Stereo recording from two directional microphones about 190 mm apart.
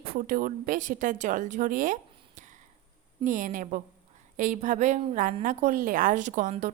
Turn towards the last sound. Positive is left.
turn(degrees=-40)  # may be behind; listen again after turning